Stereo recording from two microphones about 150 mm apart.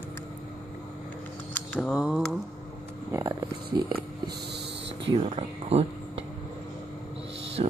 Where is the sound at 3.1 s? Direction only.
30° right (ahead or behind).